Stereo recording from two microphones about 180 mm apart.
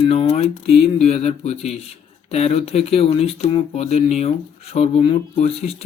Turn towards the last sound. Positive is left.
turn(degrees=35)  # may be behind; listen again after turning